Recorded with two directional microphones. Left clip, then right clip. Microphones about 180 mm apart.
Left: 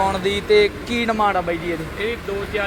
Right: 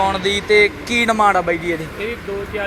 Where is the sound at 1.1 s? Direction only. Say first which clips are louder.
Right 4 dB; 20° right (ahead or behind).